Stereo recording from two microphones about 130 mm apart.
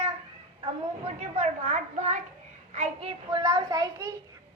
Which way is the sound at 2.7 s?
55° right (ahead or behind).